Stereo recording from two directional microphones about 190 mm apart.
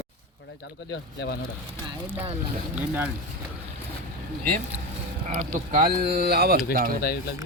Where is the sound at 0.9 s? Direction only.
60° left (ahead or behind).